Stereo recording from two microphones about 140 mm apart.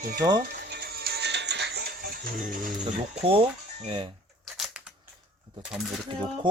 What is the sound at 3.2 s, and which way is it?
Speech, 40° right (ahead or behind).